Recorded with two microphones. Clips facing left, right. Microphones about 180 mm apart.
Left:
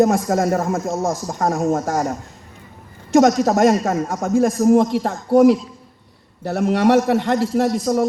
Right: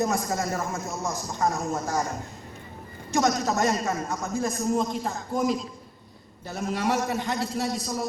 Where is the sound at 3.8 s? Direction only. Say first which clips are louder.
Left 7 dB; 45° left (ahead or behind).